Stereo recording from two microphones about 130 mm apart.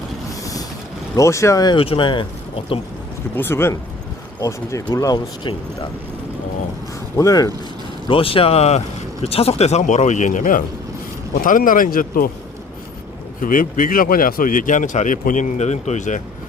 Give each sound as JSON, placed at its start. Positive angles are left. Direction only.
{"t": 1.1, "sound": "speech", "side_deg": 25}
{"t": 3.3, "sound": "speech", "side_deg": 20}
{"t": 7.2, "sound": "speech", "side_deg": 25}
{"t": 8.0, "sound": "speech", "side_deg": 45}
{"t": 13.4, "sound": "speech", "side_deg": 90}